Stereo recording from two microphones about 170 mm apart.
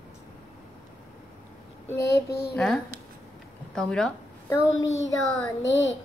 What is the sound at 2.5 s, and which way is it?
Speech, centre (ahead or behind).